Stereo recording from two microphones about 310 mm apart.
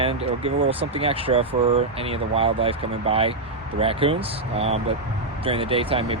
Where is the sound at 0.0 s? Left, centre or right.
Centre.